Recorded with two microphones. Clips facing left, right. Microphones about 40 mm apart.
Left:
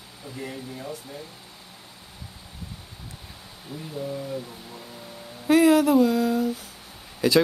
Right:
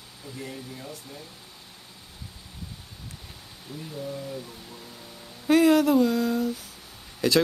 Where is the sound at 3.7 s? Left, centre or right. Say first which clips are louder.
Left 3 dB; centre.